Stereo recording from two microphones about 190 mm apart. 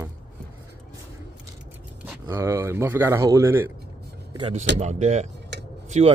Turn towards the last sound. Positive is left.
turn(degrees=-35)  # may be behind; listen again after turning